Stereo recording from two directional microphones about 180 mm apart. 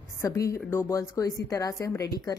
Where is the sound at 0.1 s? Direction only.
15° left (ahead or behind).